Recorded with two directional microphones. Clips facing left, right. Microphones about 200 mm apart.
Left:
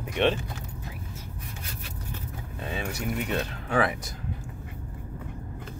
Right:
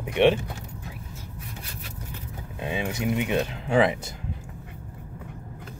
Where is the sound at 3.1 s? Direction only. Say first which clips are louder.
Right 4 dB; 20° right (ahead or behind).